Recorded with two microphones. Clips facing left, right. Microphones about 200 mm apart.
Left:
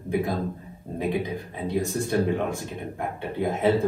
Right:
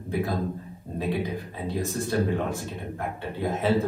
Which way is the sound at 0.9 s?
15° left (ahead or behind).